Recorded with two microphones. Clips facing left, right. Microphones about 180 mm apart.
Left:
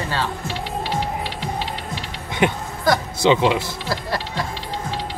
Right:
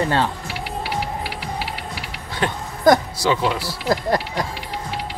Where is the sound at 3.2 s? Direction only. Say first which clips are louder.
Left 6 dB; 20° left (ahead or behind).